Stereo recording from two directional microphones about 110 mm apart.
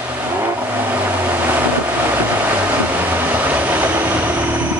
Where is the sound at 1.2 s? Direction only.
15° right (ahead or behind).